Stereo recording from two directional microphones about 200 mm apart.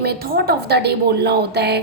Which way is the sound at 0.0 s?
50° right (ahead or behind).